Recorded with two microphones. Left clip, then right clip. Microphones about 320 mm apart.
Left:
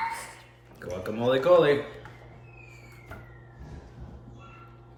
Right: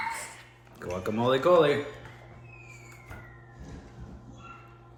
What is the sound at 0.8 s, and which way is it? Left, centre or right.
Speech, right.